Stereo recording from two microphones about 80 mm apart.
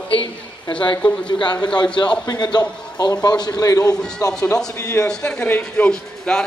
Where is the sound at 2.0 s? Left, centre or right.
Left.